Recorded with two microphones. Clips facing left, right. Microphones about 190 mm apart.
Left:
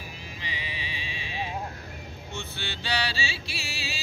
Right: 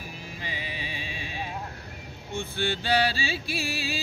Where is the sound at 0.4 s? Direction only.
45° right (ahead or behind).